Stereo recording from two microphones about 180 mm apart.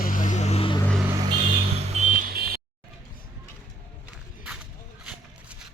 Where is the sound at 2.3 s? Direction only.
55° right (ahead or behind).